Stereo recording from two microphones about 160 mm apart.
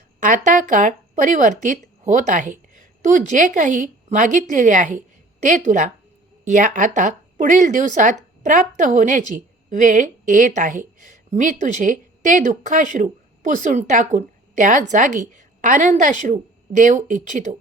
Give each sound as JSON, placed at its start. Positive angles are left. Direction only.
{"t": 0.2, "sound": "speech", "side_deg": -55}